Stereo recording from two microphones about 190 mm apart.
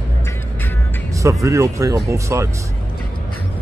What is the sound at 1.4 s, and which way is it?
Speech, 15° right (ahead or behind).